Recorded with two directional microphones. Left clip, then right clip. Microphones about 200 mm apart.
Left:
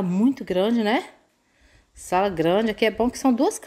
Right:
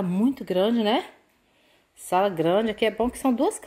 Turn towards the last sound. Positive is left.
turn(degrees=15)  # may be behind; listen again after turning